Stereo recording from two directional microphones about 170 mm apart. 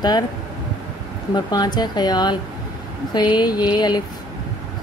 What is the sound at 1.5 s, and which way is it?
A woman's voice, 25° left (ahead or behind).